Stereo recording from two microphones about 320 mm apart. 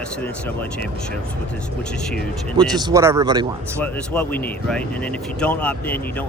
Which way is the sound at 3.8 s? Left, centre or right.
Centre.